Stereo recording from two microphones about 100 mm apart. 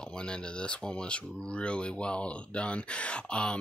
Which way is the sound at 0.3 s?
10° left (ahead or behind).